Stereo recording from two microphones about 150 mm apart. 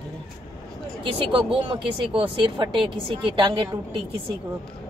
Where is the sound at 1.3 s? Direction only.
35° right (ahead or behind).